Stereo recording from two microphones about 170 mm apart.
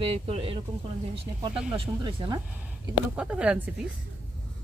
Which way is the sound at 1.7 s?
25° right (ahead or behind).